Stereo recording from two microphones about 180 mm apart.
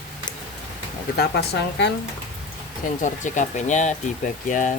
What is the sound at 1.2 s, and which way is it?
Speech, 65° left (ahead or behind).